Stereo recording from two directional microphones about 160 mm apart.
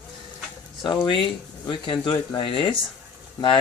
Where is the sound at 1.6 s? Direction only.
30° left (ahead or behind).